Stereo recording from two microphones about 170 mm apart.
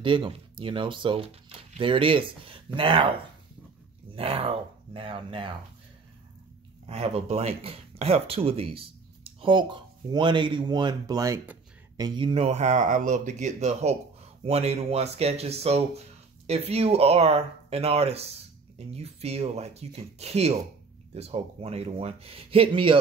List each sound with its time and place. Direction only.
0.0 s speech: 30° right (ahead or behind)
6.9 s speech: 35° right (ahead or behind)